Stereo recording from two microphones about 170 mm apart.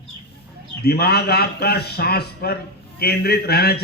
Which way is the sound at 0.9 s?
70° left (ahead or behind).